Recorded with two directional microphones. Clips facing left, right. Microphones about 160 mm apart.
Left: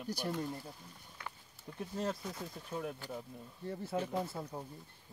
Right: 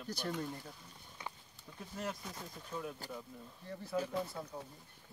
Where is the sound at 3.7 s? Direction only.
25° left (ahead or behind).